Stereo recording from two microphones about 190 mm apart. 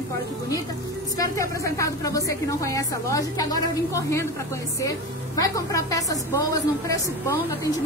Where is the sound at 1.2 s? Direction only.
15° left (ahead or behind).